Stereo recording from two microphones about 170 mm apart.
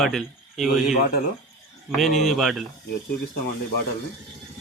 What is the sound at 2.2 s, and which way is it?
Speech, centre (ahead or behind).